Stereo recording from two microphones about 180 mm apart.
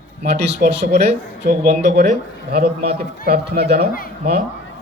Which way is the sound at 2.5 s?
60° right (ahead or behind).